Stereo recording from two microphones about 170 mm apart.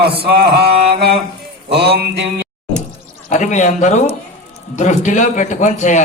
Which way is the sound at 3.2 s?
45° left (ahead or behind).